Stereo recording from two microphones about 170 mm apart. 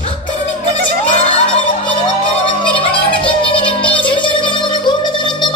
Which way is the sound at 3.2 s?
30° left (ahead or behind).